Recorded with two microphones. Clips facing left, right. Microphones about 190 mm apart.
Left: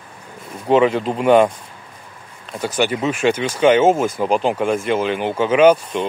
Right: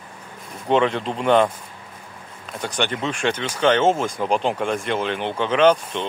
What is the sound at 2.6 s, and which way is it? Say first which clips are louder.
Speech: left 5 dB; 5° left (ahead or behind).